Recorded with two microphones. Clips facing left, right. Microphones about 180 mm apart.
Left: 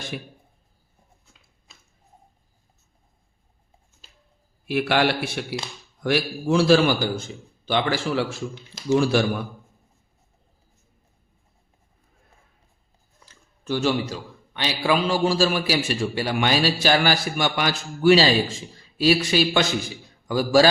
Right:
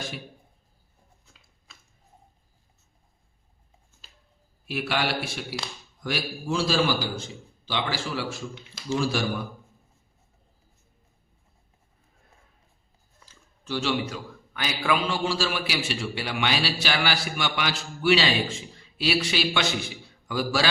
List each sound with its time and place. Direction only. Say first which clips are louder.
4.7 s a man's voice: left 6 dB; 60° left (ahead or behind)
13.2 s a sound: left 7 dB; 50° left (ahead or behind)
14.1 s a man's voice: left 2 dB; 30° left (ahead or behind)